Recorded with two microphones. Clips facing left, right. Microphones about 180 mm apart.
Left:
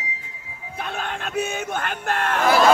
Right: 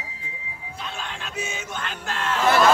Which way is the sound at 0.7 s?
55° left (ahead or behind).